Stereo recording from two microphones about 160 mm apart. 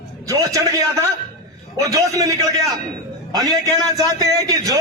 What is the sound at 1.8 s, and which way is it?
A man's voice, 20° right (ahead or behind).